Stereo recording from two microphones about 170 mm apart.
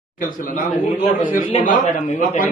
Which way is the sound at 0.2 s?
55° left (ahead or behind).